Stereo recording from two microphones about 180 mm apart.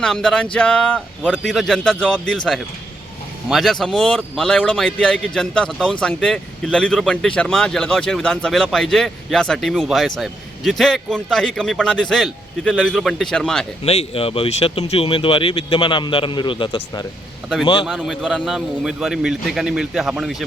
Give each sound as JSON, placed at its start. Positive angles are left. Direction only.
{"t": 0.0, "sound": "a man's voice", "side_deg": 0}
{"t": 13.8, "sound": "speech", "side_deg": 35}
{"t": 17.8, "sound": "a man's voice", "side_deg": -5}